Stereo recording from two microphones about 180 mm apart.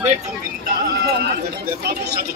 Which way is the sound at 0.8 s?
65° right (ahead or behind).